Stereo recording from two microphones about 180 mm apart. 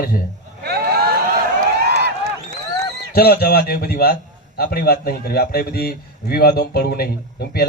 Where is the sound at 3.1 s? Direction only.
60° left (ahead or behind).